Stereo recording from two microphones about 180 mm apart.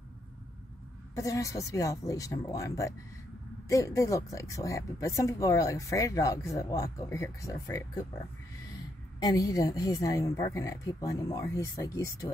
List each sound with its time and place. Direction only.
1.1 s speech: 20° left (ahead or behind)
9.2 s a woman's voice: 20° left (ahead or behind)